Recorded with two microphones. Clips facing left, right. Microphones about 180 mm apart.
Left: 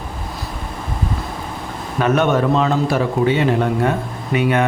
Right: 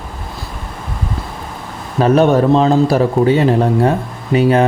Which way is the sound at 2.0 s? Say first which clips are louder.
Right 5 dB; 35° right (ahead or behind).